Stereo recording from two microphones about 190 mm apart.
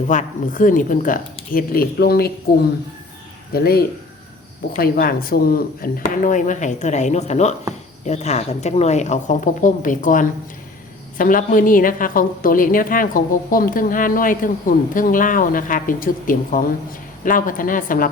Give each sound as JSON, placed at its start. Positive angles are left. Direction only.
{"t": 0.1, "sound": "a woman's voice", "side_deg": 45}
{"t": 3.5, "sound": "a woman's voice", "side_deg": 55}